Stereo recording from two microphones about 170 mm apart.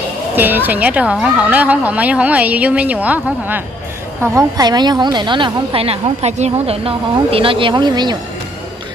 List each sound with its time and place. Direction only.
0.4 s a woman's voice: 10° right (ahead or behind)